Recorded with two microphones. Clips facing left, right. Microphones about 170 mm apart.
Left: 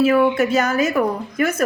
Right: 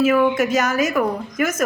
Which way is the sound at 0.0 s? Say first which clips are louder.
Left 1 dB; 35° left (ahead or behind).